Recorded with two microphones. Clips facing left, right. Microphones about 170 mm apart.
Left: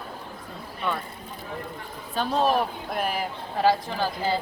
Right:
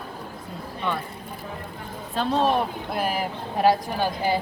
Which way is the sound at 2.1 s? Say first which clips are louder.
Right 1 dB; centre (ahead or behind).